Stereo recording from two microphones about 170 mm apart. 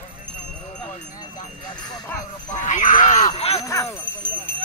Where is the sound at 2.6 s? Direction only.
45° left (ahead or behind).